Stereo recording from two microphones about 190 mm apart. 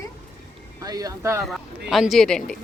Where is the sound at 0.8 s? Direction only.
20° right (ahead or behind).